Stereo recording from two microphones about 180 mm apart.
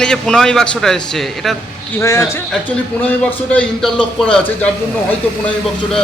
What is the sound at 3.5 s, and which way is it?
Speech, 5° left (ahead or behind).